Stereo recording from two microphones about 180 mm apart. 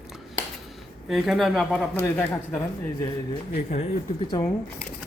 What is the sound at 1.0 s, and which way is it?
Speech, centre (ahead or behind).